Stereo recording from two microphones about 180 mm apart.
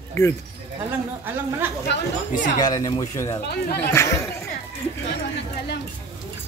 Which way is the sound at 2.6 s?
20° left (ahead or behind).